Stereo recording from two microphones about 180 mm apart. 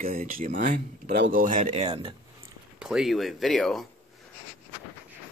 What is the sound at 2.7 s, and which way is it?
Speech, 5° right (ahead or behind).